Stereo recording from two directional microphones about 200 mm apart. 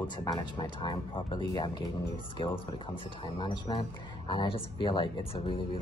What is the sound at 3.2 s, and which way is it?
Speech, 25° left (ahead or behind).